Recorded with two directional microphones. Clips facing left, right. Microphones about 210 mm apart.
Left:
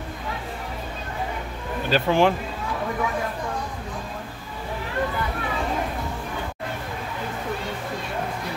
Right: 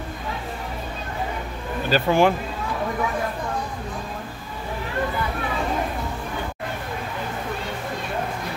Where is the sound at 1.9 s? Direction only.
5° right (ahead or behind).